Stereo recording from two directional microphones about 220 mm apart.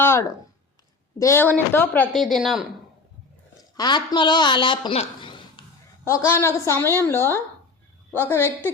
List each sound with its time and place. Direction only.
0.0 s a woman's voice: 10° left (ahead or behind)
3.8 s a woman's voice: 20° left (ahead or behind)